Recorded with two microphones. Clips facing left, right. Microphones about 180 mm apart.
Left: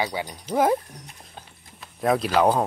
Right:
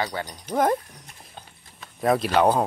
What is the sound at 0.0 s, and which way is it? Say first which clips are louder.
Speech: left 1 dB; 10° left (ahead or behind).